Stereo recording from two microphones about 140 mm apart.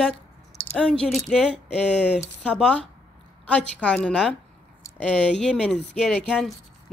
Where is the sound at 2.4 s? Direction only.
5° left (ahead or behind).